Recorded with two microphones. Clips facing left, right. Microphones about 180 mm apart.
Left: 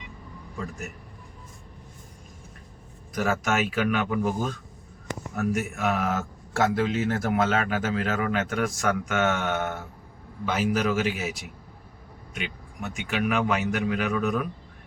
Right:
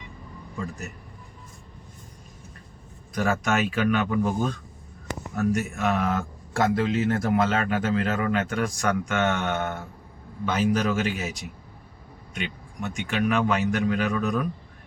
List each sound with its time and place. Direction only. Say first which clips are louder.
3.2 s speech: right 1 dB; 5° left (ahead or behind)